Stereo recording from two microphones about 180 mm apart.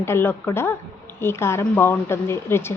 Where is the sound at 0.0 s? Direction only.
15° left (ahead or behind).